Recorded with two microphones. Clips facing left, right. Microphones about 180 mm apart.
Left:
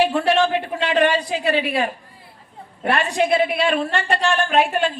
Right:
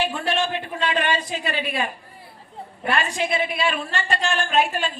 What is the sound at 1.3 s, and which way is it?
A man's voice, 70° left (ahead or behind).